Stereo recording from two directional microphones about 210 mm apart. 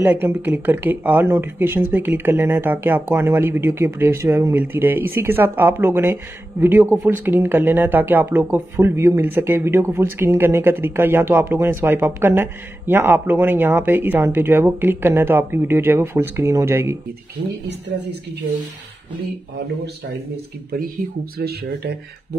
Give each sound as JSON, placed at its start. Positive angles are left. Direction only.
{"t": 0.0, "sound": "speech", "side_deg": -10}
{"t": 21.4, "sound": "speech", "side_deg": -50}